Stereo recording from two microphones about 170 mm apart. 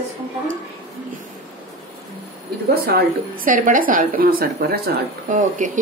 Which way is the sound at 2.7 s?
60° right (ahead or behind).